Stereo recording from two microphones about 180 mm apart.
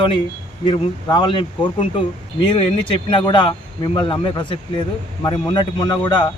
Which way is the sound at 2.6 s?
25° left (ahead or behind).